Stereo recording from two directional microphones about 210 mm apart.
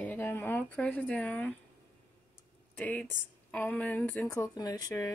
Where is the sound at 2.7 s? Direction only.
5° left (ahead or behind).